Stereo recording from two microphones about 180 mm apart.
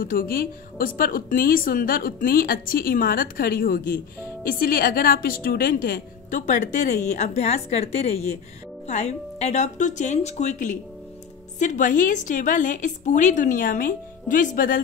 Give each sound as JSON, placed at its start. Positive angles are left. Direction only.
{"t": 0.0, "sound": "a woman's voice", "side_deg": 50}